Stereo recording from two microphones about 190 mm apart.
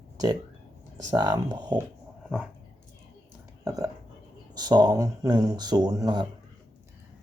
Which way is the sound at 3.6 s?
20° right (ahead or behind).